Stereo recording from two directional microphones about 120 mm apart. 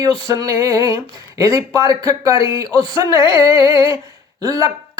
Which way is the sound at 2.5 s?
30° right (ahead or behind).